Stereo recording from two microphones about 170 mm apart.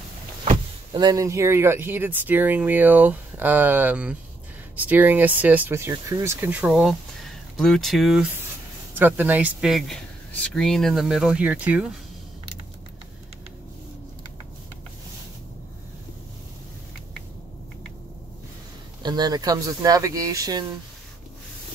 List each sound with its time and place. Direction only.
0.9 s speech: 20° right (ahead or behind); by 12.0 s 5° right (ahead or behind)
19.0 s speech: 25° right (ahead or behind)